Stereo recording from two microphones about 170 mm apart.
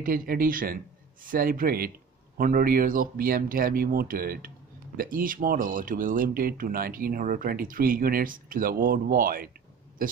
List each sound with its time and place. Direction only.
0.0 s speech: 55° right (ahead or behind)